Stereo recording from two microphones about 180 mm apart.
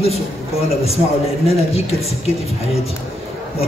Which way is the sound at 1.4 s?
35° left (ahead or behind).